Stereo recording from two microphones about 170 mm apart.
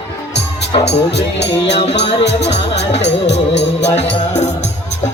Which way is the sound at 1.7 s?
35° left (ahead or behind).